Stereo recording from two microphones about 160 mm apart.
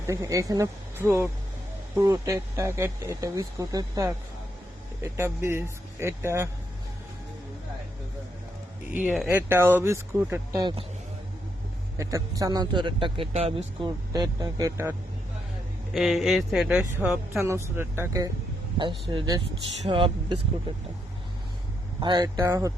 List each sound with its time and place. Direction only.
0.1 s speech: 20° right (ahead or behind)
8.9 s speech: 5° right (ahead or behind)
10.6 s speech: 30° right (ahead or behind)
11.9 s speech: 20° right (ahead or behind); by 13.7 s 40° right (ahead or behind)
13.8 s speech: 25° right (ahead or behind)
15.9 s speech: centre (ahead or behind); by 18.3 s 20° right (ahead or behind)
18.8 s speech: 30° right (ahead or behind)
22.0 s speech: 25° right (ahead or behind)